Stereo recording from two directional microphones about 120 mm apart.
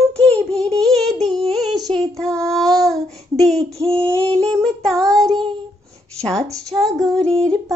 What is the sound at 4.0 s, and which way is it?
Speech, 10° left (ahead or behind).